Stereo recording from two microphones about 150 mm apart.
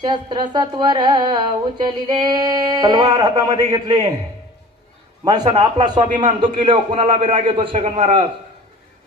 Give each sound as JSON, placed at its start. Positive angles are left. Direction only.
{"t": 0.0, "sound": "speech", "side_deg": -30}
{"t": 5.2, "sound": "a man's voice", "side_deg": -30}